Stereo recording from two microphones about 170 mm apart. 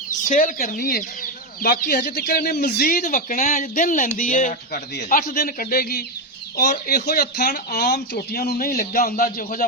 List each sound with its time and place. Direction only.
0.3 s speech: 55° left (ahead or behind)